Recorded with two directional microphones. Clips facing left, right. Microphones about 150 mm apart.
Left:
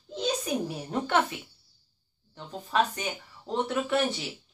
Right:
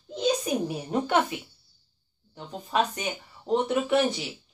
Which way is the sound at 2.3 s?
15° right (ahead or behind).